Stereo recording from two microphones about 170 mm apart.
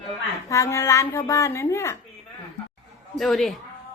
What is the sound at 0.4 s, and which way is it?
Speech, 20° left (ahead or behind).